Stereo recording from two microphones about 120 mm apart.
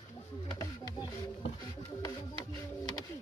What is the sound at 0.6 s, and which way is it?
Music, 35° left (ahead or behind).